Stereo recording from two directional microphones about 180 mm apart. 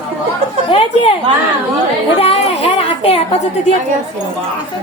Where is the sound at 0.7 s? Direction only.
30° left (ahead or behind).